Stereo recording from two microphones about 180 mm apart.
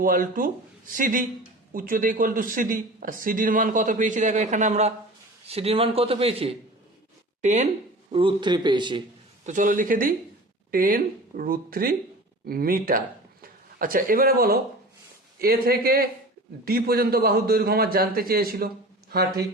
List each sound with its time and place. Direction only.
0.0 s a man's voice: 50° right (ahead or behind)
8.1 s speech: 25° right (ahead or behind)
9.5 s a man's voice: 45° right (ahead or behind)